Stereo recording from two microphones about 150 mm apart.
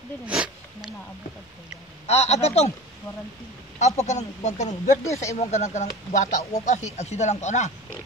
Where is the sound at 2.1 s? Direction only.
45° left (ahead or behind).